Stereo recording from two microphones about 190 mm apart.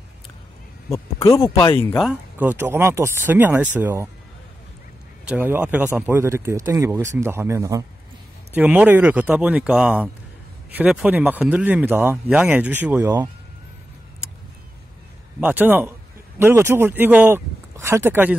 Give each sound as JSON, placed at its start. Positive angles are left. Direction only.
{"t": 0.8, "sound": "speech", "side_deg": 15}
{"t": 1.8, "sound": "speech", "side_deg": 10}
{"t": 2.0, "sound": "speech", "side_deg": -10}
{"t": 5.3, "sound": "speech", "side_deg": -10}
{"t": 15.4, "sound": "speech", "side_deg": -10}